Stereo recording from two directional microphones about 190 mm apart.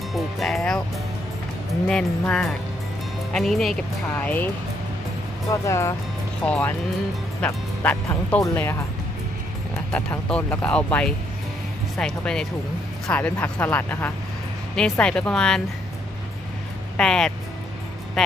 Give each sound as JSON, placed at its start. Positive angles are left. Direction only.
{"t": 0.1, "sound": "music", "side_deg": 0}
{"t": 1.9, "sound": "speech", "side_deg": 5}
{"t": 9.9, "sound": "speech", "side_deg": 5}
{"t": 17.0, "sound": "speech", "side_deg": 5}